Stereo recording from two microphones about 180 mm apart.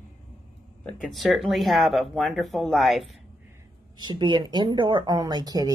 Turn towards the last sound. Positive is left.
turn(degrees=-20)  # may be behind; listen again after turning